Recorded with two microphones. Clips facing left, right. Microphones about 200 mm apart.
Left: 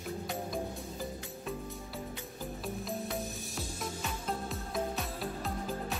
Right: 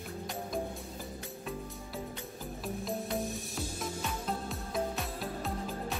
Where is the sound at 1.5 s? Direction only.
Centre (ahead or behind).